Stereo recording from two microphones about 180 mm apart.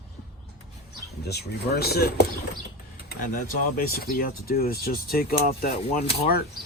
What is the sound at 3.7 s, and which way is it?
Speech, 55° left (ahead or behind).